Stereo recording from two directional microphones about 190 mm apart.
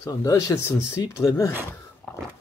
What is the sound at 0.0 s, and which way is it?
Speech, 20° left (ahead or behind).